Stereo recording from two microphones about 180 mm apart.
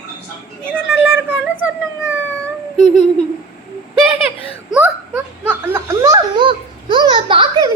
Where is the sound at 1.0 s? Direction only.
10° right (ahead or behind).